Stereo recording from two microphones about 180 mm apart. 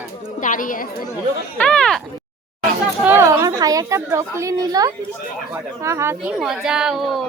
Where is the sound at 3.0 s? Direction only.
15° right (ahead or behind).